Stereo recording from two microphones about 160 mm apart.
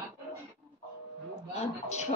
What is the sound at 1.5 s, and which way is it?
Speech, 45° left (ahead or behind).